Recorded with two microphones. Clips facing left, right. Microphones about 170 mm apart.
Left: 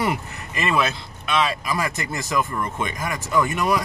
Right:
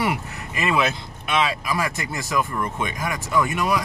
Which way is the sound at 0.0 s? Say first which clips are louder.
Even; 5° right (ahead or behind).